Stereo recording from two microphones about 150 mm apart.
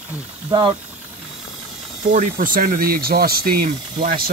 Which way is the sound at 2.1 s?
65° right (ahead or behind).